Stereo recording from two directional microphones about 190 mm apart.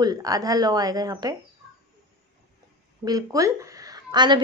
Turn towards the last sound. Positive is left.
turn(degrees=-25)  # may be behind; listen again after turning